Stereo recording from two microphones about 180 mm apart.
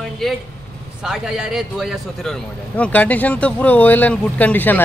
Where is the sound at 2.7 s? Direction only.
10° left (ahead or behind).